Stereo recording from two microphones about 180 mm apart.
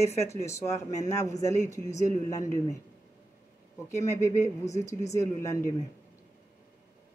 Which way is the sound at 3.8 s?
15° left (ahead or behind).